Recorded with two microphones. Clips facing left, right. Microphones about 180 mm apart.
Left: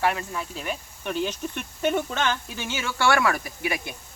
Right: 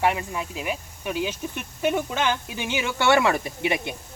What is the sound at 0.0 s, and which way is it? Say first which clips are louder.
Speech: right 2 dB; 15° right (ahead or behind).